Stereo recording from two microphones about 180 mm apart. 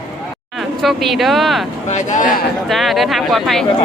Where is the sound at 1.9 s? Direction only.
40° left (ahead or behind).